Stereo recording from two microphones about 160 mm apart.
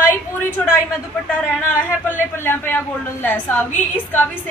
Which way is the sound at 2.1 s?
15° left (ahead or behind).